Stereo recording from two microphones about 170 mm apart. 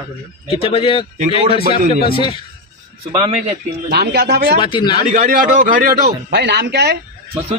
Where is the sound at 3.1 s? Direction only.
30° right (ahead or behind).